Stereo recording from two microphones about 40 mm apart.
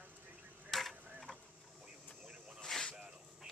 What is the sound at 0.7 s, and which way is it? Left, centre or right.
Mechanisms, centre.